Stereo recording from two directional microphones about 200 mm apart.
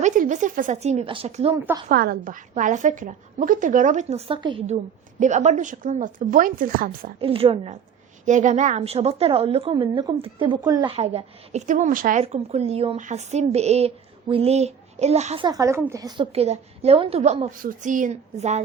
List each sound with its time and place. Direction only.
0.0 s a woman's voice: 40° right (ahead or behind)
1.9 s a woman's voice: 45° right (ahead or behind); by 4.6 s 25° right (ahead or behind)
5.2 s a woman's voice: 35° right (ahead or behind)
7.2 s a woman's voice: 30° right (ahead or behind)
15.4 s a woman's voice: 15° right (ahead or behind); by 18.6 s 35° right (ahead or behind)